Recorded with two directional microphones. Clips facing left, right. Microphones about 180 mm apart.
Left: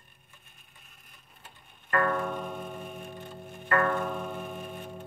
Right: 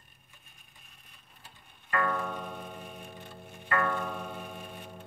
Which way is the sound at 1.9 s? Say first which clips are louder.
Left 4 dB; 50° left (ahead or behind).